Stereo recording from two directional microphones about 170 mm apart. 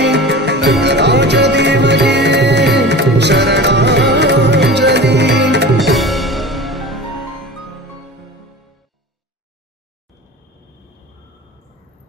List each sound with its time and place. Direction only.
0.0 s music: 90° right
5.9 s music: centre (ahead or behind)